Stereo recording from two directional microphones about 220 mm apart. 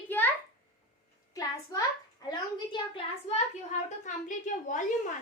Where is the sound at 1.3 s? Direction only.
15° left (ahead or behind).